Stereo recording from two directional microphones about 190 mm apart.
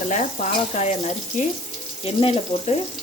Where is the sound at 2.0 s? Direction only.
30° left (ahead or behind).